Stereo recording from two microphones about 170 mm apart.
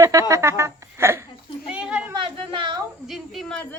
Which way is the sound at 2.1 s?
30° right (ahead or behind).